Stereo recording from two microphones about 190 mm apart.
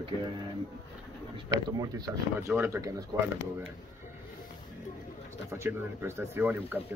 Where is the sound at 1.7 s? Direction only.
20° right (ahead or behind).